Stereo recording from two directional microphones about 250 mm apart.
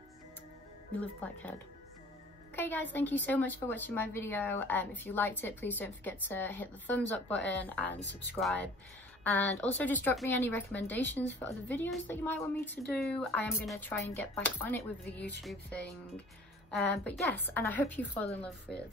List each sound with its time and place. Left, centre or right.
0.9 s a woman's voice: centre
2.5 s a woman's voice: centre
8.0 s speech: left
8.4 s a woman's voice: centre
16.7 s a woman's voice: centre